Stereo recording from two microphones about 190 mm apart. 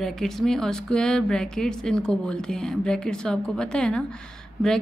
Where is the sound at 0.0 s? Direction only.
Centre (ahead or behind).